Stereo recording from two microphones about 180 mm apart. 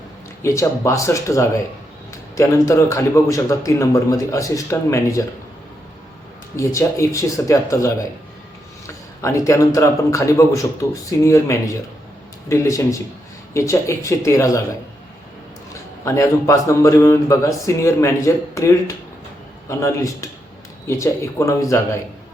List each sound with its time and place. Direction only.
0.4 s speech: 15° left (ahead or behind)
6.6 s speech: 15° left (ahead or behind)
9.2 s speech: 15° left (ahead or behind)
16.0 s speech: 15° left (ahead or behind)